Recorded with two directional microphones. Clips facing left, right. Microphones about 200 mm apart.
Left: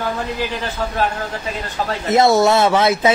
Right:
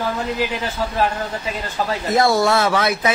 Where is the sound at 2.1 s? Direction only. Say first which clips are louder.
Left 4 dB; 25° left (ahead or behind).